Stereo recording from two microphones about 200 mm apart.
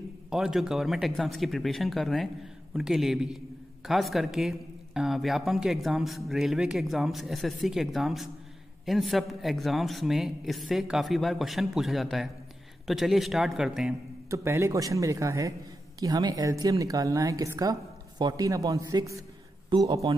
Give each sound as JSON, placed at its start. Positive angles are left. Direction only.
{"t": 0.3, "sound": "speech", "side_deg": 0}
{"t": 14.3, "sound": "a woman's voice", "side_deg": -15}